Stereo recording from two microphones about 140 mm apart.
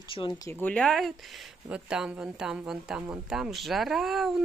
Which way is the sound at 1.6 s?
5° right (ahead or behind).